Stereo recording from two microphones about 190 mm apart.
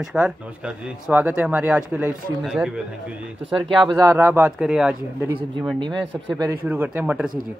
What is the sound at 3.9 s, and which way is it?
Speech, 10° right (ahead or behind).